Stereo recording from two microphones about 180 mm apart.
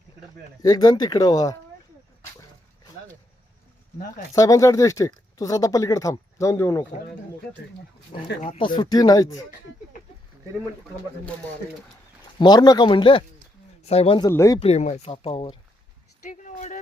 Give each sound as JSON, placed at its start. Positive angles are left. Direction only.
{"t": 0.6, "sound": "speech", "side_deg": 20}
{"t": 4.4, "sound": "speech", "side_deg": 20}
{"t": 8.4, "sound": "speech", "side_deg": 30}
{"t": 12.4, "sound": "speech", "side_deg": 25}
{"t": 14.2, "sound": "speech", "side_deg": 15}
{"t": 14.6, "sound": "speech", "side_deg": 40}
{"t": 16.3, "sound": "speech", "side_deg": 45}